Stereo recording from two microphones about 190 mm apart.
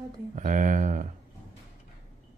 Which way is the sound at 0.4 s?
40° right (ahead or behind).